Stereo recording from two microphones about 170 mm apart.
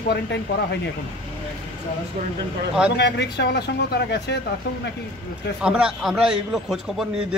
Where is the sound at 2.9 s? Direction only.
85° left.